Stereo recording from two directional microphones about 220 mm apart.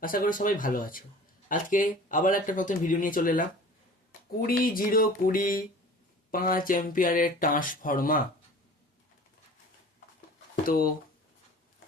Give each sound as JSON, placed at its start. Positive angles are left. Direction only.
{"t": 0.0, "sound": "speech", "side_deg": 40}
{"t": 10.5, "sound": "speech", "side_deg": 40}